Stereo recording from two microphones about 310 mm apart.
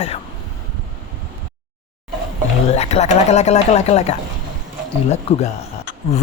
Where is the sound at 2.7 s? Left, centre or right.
Left.